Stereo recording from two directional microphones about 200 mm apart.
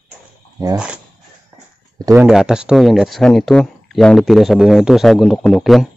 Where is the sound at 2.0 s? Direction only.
15° right (ahead or behind).